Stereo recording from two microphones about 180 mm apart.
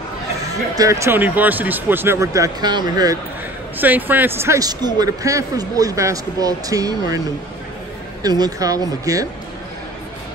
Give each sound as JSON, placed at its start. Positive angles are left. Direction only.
{"t": 0.4, "sound": "speech", "side_deg": -20}
{"t": 3.7, "sound": "a man's voice", "side_deg": -10}
{"t": 8.2, "sound": "a man's voice", "side_deg": -20}